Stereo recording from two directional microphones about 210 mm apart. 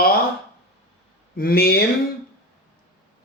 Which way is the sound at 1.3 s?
45° left (ahead or behind).